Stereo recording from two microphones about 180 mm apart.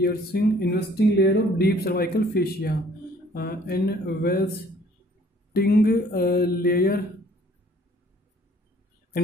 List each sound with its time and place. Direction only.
0.0 s speech: 60° left (ahead or behind)
5.5 s speech: 55° left (ahead or behind)